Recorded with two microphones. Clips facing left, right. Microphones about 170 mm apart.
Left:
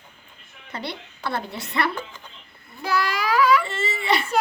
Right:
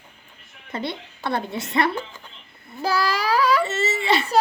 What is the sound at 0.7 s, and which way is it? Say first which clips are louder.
A woman's voice: right 4 dB; 20° right (ahead or behind).